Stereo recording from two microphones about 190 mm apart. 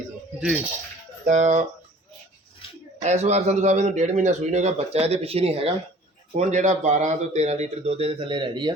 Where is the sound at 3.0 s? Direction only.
35° right (ahead or behind).